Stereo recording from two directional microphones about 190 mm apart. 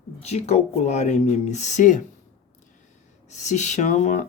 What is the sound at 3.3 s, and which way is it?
Speech, 40° left (ahead or behind).